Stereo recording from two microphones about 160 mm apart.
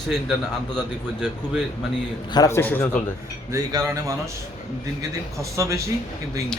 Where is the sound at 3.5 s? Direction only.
20° right (ahead or behind).